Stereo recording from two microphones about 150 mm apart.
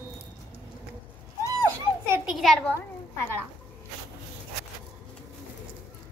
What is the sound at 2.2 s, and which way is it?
Speech, centre (ahead or behind).